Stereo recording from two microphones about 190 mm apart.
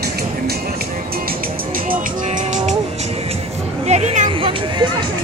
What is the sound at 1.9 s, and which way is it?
Music, 40° right (ahead or behind).